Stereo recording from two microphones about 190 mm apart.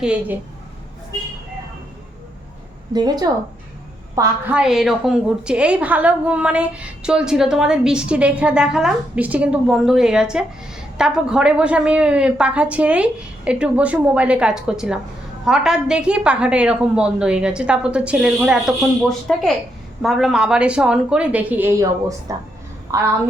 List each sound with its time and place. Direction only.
0.0 s a woman's voice: 5° right (ahead or behind)
2.9 s a woman's voice: 20° right (ahead or behind)
4.5 s a woman's voice: 5° right (ahead or behind)